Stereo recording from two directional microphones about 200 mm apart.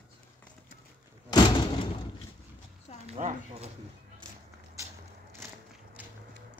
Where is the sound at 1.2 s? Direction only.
20° left (ahead or behind).